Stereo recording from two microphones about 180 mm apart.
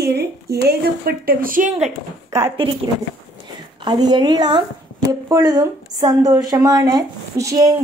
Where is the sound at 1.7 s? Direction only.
40° right (ahead or behind).